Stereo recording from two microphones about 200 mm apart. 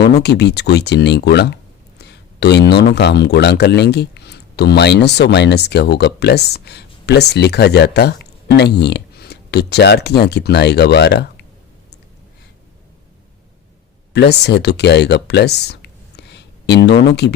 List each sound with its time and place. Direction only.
0.0 s speech: 55° left (ahead or behind)
2.0 s a sound: 55° left (ahead or behind)
2.9 s speech: 55° left (ahead or behind)
14.1 s speech: 55° left (ahead or behind)